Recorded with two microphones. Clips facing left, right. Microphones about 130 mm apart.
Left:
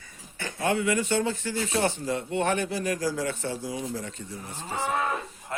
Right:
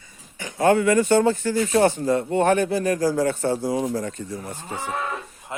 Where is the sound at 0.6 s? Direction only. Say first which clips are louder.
Right 8 dB; 50° right (ahead or behind).